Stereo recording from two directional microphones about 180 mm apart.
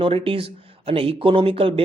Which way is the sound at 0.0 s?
30° right (ahead or behind).